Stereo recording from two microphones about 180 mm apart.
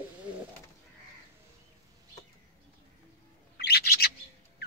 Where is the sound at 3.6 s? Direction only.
60° left (ahead or behind).